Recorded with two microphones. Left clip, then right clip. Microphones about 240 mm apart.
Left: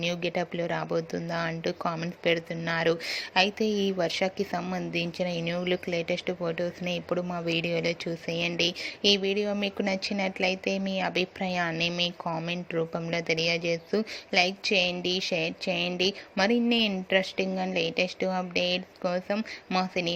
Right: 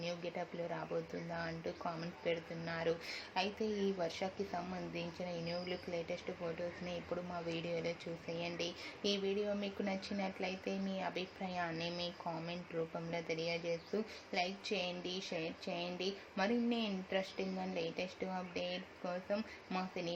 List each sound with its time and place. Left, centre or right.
0.0 s speech: left